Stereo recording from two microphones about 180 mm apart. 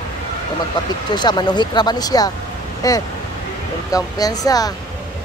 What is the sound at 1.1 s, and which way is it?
Speech, 25° left (ahead or behind).